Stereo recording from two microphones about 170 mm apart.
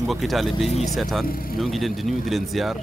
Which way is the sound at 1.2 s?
60° left (ahead or behind).